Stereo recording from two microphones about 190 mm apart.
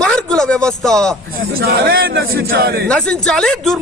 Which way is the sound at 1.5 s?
55° right (ahead or behind).